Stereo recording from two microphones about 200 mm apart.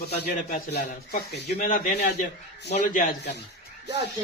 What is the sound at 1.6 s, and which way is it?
Speech, 40° left (ahead or behind).